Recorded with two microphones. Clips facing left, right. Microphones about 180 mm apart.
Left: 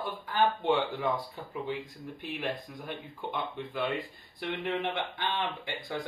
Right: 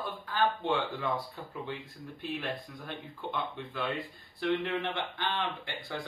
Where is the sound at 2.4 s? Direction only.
15° left (ahead or behind).